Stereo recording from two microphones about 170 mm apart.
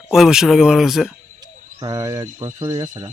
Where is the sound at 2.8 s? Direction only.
45° right (ahead or behind).